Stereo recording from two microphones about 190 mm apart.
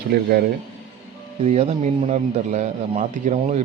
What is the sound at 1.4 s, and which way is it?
A man's voice, 35° right (ahead or behind).